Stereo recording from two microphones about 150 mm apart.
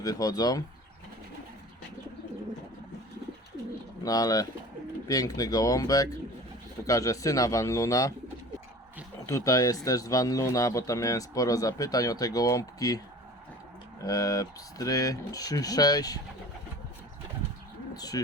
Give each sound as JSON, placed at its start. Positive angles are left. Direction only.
{"t": 0.0, "sound": "speech", "side_deg": 25}
{"t": 4.0, "sound": "speech", "side_deg": 25}
{"t": 9.2, "sound": "speech", "side_deg": 20}
{"t": 14.0, "sound": "speech", "side_deg": 25}
{"t": 17.9, "sound": "bird", "side_deg": 25}